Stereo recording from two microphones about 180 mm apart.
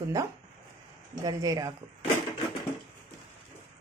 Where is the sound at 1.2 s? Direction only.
20° right (ahead or behind).